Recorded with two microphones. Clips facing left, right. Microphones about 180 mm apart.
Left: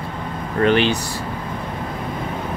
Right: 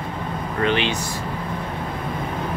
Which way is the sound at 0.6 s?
40° left (ahead or behind).